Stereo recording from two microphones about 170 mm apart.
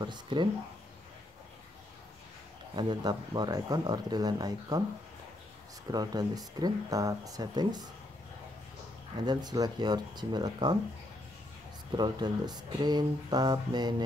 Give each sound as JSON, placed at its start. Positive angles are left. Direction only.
{"t": 0.0, "sound": "speech", "side_deg": -25}
{"t": 2.7, "sound": "speech", "side_deg": -30}
{"t": 5.9, "sound": "speech", "side_deg": -20}
{"t": 9.2, "sound": "speech", "side_deg": -25}
{"t": 12.0, "sound": "speech", "side_deg": -25}